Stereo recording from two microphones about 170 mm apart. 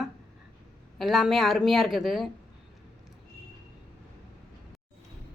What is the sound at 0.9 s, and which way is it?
A woman's voice, centre (ahead or behind).